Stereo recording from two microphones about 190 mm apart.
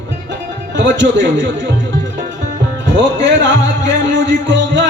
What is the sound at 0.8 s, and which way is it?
Music, 75° right (ahead or behind).